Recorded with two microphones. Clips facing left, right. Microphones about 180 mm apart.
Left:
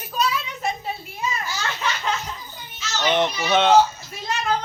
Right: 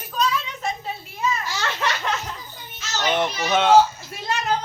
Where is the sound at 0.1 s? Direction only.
10° left (ahead or behind).